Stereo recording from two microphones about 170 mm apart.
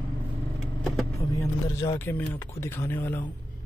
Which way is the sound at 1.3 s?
15° left (ahead or behind).